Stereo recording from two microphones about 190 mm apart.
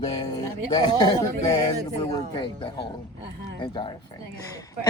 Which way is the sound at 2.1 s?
25° left (ahead or behind).